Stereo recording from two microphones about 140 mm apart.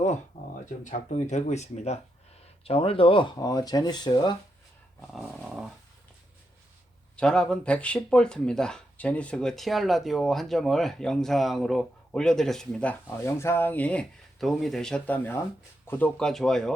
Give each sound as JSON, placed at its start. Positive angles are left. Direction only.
{"t": 0.6, "sound": "speech", "side_deg": 60}
{"t": 4.9, "sound": "speech", "side_deg": 0}
{"t": 7.2, "sound": "speech", "side_deg": 5}